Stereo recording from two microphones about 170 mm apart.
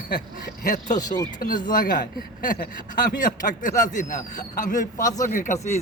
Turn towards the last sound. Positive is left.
turn(degrees=45)  # may be behind; listen again after turning